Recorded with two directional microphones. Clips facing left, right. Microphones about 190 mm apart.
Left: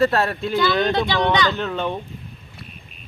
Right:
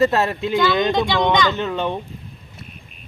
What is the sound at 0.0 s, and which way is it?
Speech, 20° right (ahead or behind).